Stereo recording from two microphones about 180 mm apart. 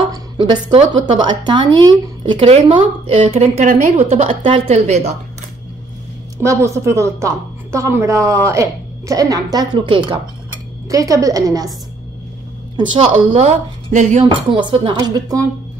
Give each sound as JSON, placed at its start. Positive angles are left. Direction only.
{"t": 0.1, "sound": "a sound", "side_deg": -25}
{"t": 0.7, "sound": "a woman's voice", "side_deg": -30}
{"t": 6.4, "sound": "a woman's voice", "side_deg": -15}
{"t": 12.7, "sound": "a woman's voice", "side_deg": -25}
{"t": 14.5, "sound": "speech", "side_deg": -25}